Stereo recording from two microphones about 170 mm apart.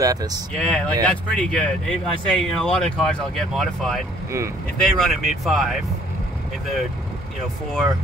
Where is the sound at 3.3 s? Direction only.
Centre (ahead or behind).